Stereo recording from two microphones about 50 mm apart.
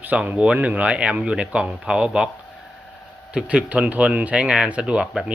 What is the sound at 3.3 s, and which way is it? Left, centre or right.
Speech, right.